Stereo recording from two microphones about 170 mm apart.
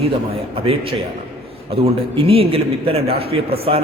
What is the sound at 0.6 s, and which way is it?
A man's voice, 35° right (ahead or behind).